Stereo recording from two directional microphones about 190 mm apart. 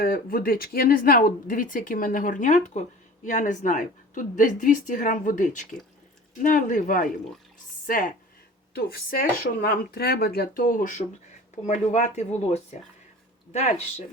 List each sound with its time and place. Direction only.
0.0 s speech: 50° left (ahead or behind)